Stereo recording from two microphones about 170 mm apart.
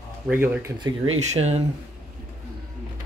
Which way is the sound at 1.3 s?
40° right (ahead or behind).